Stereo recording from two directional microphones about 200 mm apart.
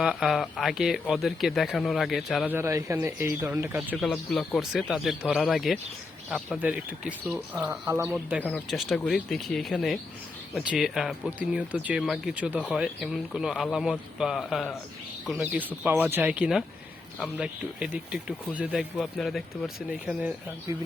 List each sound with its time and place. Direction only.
0.0 s speech: centre (ahead or behind)
2.6 s speech: 15° right (ahead or behind)
4.0 s speech: centre (ahead or behind)
20.7 s speech: 15° right (ahead or behind)